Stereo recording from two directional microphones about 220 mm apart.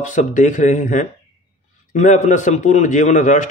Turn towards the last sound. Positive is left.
turn(degrees=35)  # may be behind; listen again after turning